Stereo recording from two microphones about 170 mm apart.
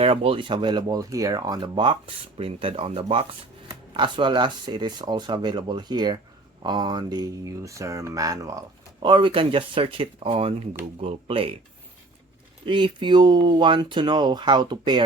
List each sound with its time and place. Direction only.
0.0 s speech: 35° right (ahead or behind)
12.6 s speech: 30° right (ahead or behind)